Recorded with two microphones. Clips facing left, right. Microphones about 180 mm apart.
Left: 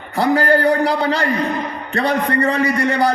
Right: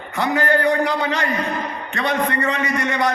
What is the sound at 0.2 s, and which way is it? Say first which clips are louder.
A man's voice: left 4 dB; 35° left (ahead or behind).